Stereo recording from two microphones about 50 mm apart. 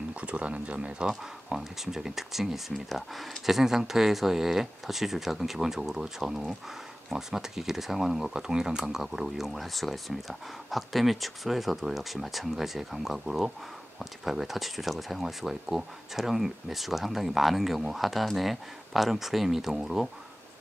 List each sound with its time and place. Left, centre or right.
0.1 s speech: right
1.0 s speech: centre